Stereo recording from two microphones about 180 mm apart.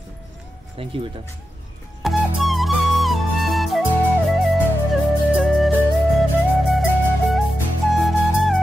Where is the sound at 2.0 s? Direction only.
Centre (ahead or behind).